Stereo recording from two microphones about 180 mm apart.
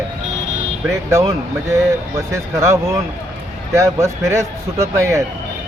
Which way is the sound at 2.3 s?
15° right (ahead or behind).